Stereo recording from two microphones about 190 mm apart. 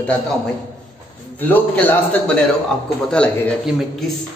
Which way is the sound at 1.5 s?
10° left (ahead or behind).